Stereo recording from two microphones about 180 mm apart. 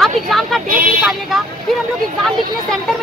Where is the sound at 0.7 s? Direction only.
50° right (ahead or behind).